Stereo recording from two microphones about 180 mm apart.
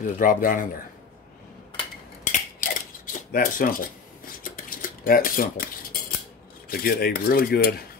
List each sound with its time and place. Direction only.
0.0 s speech: 50° left (ahead or behind)
2.6 s mechanisms: 50° left (ahead or behind)
4.4 s dishes: 50° left (ahead or behind)
6.7 s speech: 60° left (ahead or behind)